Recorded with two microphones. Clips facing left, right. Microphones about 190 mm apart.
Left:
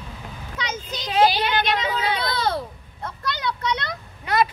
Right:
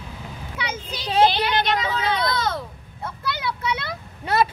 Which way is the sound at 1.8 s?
30° left (ahead or behind).